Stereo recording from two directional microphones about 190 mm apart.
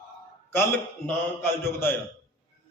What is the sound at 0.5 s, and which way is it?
A man's voice, 10° left (ahead or behind).